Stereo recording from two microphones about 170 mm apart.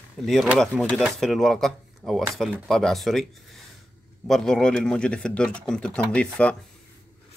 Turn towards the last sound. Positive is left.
turn(degrees=5)  # may be behind; listen again after turning